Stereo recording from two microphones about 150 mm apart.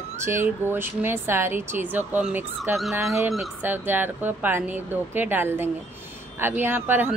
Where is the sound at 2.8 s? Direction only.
Centre (ahead or behind).